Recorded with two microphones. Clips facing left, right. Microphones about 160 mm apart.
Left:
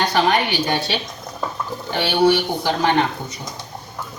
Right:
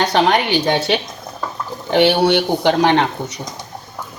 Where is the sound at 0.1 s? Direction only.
80° right.